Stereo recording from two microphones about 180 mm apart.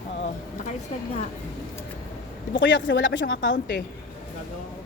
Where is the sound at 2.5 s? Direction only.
90° left.